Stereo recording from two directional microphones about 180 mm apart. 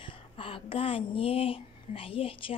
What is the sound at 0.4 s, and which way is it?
A woman's voice, 30° left (ahead or behind).